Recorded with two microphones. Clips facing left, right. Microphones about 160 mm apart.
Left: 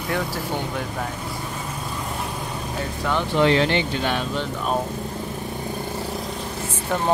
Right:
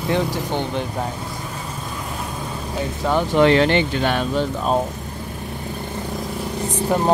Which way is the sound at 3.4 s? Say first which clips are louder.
Right 4 dB; 60° right (ahead or behind).